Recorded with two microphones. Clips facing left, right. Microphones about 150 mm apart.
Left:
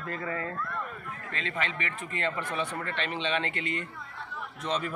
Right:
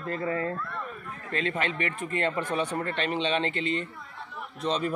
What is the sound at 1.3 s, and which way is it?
Speech, 40° right (ahead or behind).